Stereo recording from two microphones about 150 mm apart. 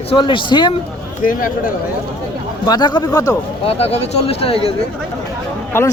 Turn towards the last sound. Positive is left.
turn(degrees=15)  # may be behind; listen again after turning